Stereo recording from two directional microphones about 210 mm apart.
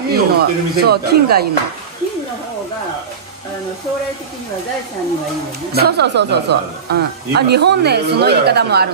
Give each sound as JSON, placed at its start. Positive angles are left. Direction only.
{"t": 0.1, "sound": "speech", "side_deg": -50}
{"t": 5.7, "sound": "speech", "side_deg": -50}